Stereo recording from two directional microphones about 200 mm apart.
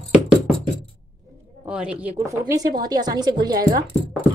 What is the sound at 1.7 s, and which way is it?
A woman's voice, 5° right (ahead or behind).